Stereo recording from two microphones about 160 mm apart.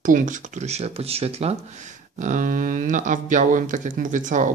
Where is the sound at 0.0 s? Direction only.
55° right (ahead or behind).